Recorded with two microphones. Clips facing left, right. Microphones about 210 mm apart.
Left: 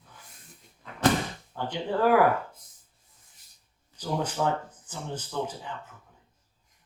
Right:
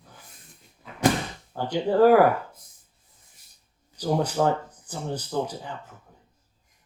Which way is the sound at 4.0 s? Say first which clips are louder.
Right 5 dB; 40° right (ahead or behind).